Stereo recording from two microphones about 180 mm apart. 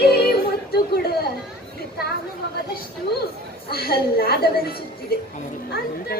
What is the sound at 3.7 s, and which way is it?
A woman's voice, 60° left (ahead or behind).